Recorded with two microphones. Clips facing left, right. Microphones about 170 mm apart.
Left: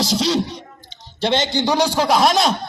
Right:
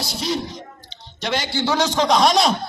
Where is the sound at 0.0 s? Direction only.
90° left.